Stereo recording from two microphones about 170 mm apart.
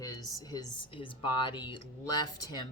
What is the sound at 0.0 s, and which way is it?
Speech, 20° left (ahead or behind).